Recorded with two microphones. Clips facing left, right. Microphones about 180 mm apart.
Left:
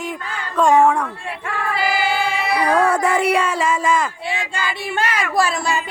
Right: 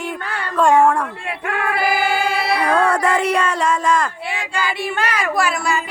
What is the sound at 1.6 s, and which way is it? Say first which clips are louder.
Choir: right 2 dB; 55° right (ahead or behind).